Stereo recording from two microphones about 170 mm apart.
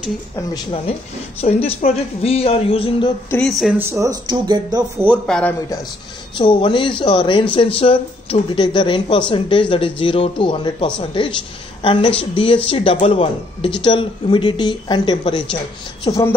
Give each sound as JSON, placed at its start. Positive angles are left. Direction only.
{"t": 1.4, "sound": "speech", "side_deg": 35}
{"t": 3.3, "sound": "speech", "side_deg": 5}
{"t": 3.7, "sound": "speech", "side_deg": -15}
{"t": 5.2, "sound": "speech", "side_deg": 5}
{"t": 6.3, "sound": "a woman's voice", "side_deg": 30}